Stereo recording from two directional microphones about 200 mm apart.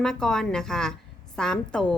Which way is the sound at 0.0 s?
5° left (ahead or behind).